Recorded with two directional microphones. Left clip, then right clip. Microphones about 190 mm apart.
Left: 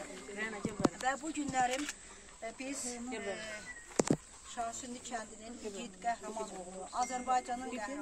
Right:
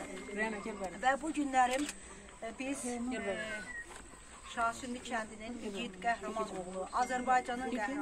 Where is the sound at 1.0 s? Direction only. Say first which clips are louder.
Right 4 dB; 5° left (ahead or behind).